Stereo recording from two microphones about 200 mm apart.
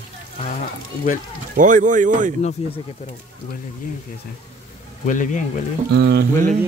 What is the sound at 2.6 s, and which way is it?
Speech, 30° left (ahead or behind).